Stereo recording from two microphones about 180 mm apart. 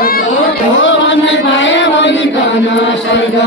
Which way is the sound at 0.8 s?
90° left.